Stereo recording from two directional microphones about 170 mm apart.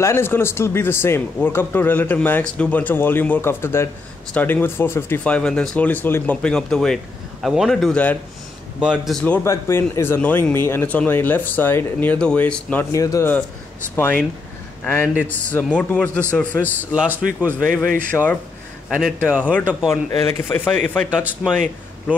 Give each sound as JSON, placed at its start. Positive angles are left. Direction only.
{"t": 0.0, "sound": "speech", "side_deg": 15}
{"t": 8.8, "sound": "speech", "side_deg": -5}
{"t": 12.9, "sound": "speech", "side_deg": 20}
{"t": 16.9, "sound": "speech", "side_deg": -5}
{"t": 17.6, "sound": "speech", "side_deg": 10}
{"t": 18.9, "sound": "speech", "side_deg": 0}
{"t": 19.9, "sound": "speech", "side_deg": 15}
{"t": 21.1, "sound": "speech", "side_deg": -5}